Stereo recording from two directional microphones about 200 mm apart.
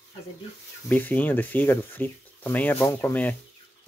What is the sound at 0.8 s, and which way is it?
Speech, 10° left (ahead or behind).